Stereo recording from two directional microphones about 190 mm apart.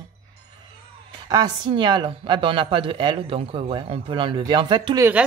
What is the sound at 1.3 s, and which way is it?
Speech, 20° right (ahead or behind).